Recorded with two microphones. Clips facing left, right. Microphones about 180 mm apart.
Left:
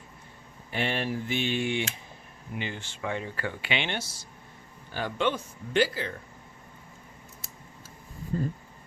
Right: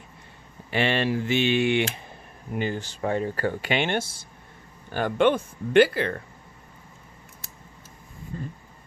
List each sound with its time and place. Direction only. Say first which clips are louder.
0.7 s speech: right 6 dB; 90° right; by 1.8 s 70° right (ahead or behind)
2.5 s speech: right 8 dB; 45° right (ahead or behind); by 6.2 s 65° right (ahead or behind)
8.3 s speech: left 6 dB; 35° left (ahead or behind)